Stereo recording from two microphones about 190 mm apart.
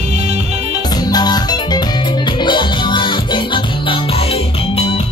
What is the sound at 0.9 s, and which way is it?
Music, 20° left (ahead or behind).